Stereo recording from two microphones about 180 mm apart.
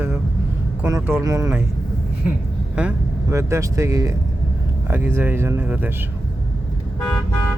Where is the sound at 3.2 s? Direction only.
15° right (ahead or behind).